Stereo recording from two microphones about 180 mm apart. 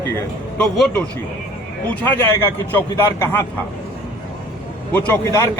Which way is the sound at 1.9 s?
10° left (ahead or behind).